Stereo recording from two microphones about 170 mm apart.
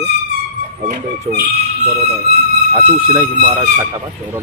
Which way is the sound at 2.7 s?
30° right (ahead or behind).